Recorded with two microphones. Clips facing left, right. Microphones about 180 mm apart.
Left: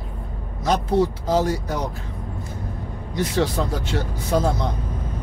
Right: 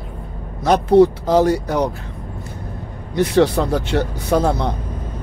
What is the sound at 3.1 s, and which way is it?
Speech, 65° right (ahead or behind).